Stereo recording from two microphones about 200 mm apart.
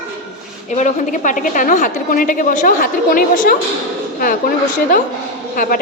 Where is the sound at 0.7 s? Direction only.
40° left (ahead or behind).